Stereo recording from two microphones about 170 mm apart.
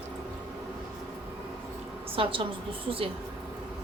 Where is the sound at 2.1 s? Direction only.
30° right (ahead or behind).